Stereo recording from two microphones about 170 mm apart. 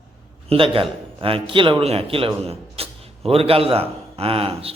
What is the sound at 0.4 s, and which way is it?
A man's voice, 35° right (ahead or behind).